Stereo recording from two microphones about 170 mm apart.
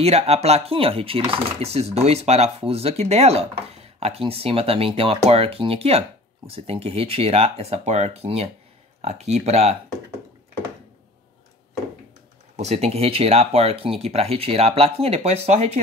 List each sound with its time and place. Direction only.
0.0 s speech: 40° right (ahead or behind)
12.5 s speech: 40° right (ahead or behind)